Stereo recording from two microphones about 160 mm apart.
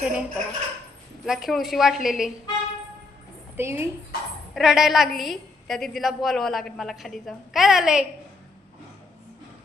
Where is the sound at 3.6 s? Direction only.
15° right (ahead or behind).